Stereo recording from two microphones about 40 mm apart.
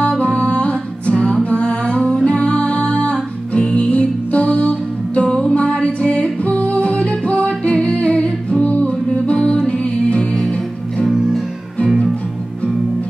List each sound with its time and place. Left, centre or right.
0.1 s music: left